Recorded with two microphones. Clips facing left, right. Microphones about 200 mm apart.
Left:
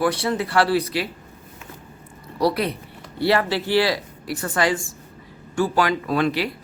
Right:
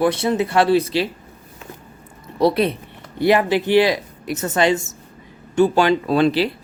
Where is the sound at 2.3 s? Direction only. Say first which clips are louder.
Right 4 dB; 25° right (ahead or behind).